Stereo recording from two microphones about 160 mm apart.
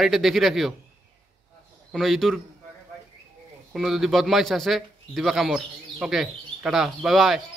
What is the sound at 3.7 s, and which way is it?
A man's voice, centre (ahead or behind).